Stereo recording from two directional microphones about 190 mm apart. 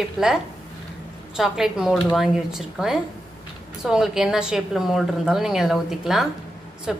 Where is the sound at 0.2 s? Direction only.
Centre (ahead or behind).